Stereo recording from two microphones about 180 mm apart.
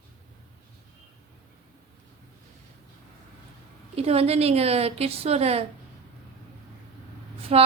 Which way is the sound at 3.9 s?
35° right (ahead or behind).